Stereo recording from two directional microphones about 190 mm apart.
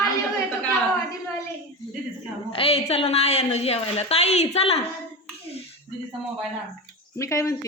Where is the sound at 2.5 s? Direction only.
30° left (ahead or behind).